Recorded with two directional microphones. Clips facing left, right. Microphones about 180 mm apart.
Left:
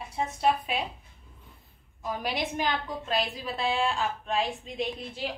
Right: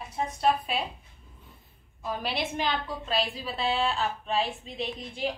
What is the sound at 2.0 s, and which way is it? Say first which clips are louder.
Speech: even; 15° left (ahead or behind).